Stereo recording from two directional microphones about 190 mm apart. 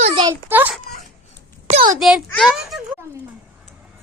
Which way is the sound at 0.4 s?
10° right (ahead or behind).